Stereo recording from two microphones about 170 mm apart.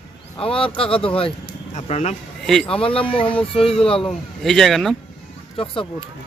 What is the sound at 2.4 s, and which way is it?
Speech, 5° left (ahead or behind).